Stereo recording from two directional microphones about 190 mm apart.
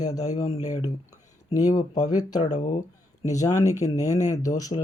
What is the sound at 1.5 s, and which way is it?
Speech, 20° left (ahead or behind).